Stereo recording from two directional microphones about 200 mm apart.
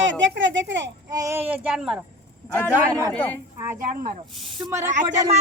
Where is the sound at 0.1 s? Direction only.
70° right (ahead or behind).